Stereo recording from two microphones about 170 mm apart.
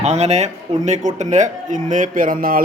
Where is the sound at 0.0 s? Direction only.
40° right (ahead or behind).